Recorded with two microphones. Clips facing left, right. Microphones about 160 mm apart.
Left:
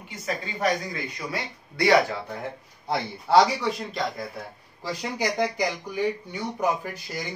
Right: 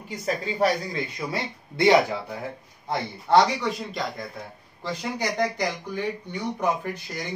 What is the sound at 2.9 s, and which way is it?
Speech, 5° left (ahead or behind).